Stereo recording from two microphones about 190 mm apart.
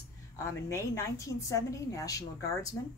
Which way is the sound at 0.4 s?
15° left (ahead or behind).